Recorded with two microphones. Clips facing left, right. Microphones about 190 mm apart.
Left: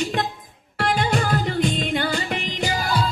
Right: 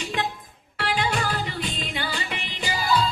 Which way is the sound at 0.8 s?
45° left (ahead or behind).